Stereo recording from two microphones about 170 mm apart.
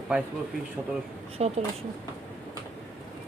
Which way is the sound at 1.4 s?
40° right (ahead or behind).